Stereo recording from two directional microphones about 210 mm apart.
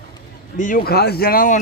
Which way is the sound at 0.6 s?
45° left (ahead or behind).